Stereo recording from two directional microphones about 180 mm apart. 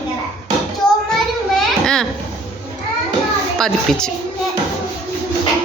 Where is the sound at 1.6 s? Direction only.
5° left (ahead or behind).